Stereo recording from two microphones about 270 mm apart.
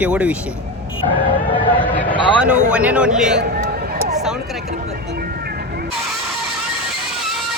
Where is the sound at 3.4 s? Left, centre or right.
Right.